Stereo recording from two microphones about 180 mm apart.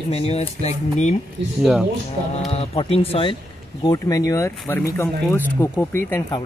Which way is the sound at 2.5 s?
35° left (ahead or behind).